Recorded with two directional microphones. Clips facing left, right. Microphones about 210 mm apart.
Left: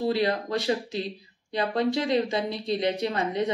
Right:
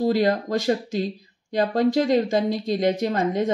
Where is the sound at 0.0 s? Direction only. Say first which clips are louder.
Right 5 dB; 45° right (ahead or behind).